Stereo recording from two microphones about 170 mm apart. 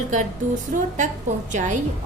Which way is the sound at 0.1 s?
45° right (ahead or behind).